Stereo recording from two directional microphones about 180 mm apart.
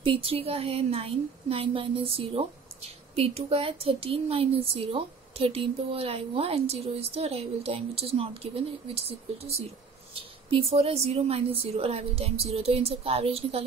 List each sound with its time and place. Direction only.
0.0 s a woman's voice: 30° right (ahead or behind)